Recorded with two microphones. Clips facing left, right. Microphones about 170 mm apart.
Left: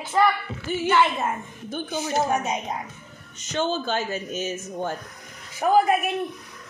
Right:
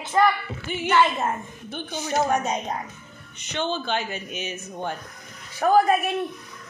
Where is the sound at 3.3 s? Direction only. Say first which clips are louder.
Left 2 dB; 40° left (ahead or behind).